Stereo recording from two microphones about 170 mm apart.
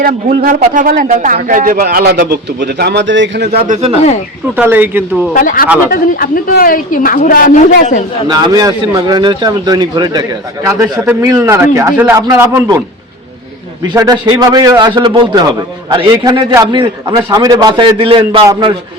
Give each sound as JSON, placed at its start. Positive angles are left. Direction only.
{"t": 0.0, "sound": "speech", "side_deg": -55}
{"t": 4.5, "sound": "speech", "side_deg": -10}
{"t": 5.3, "sound": "a man's voice", "side_deg": 55}
{"t": 8.3, "sound": "a man's voice", "side_deg": -25}
{"t": 13.8, "sound": "a man's voice", "side_deg": -20}